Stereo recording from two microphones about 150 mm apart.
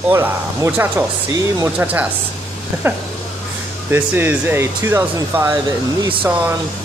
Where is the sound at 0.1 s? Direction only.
15° right (ahead or behind).